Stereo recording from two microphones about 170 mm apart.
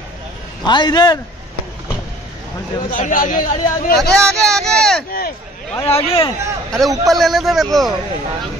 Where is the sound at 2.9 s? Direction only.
50° left (ahead or behind).